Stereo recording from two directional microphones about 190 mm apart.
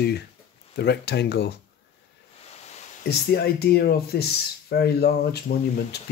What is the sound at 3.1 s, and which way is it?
Speech, 55° left (ahead or behind).